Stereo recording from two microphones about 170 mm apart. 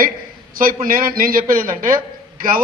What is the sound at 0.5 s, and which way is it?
A man's voice, 55° right (ahead or behind).